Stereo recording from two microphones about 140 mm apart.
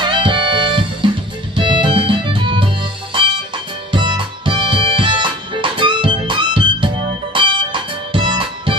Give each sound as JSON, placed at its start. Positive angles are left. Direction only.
{"t": 0.0, "sound": "music", "side_deg": -35}